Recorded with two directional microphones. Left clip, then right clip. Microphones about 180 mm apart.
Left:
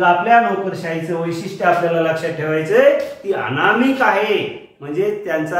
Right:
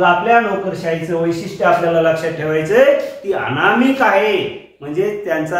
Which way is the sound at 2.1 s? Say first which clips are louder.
Right 2 dB; 30° right (ahead or behind).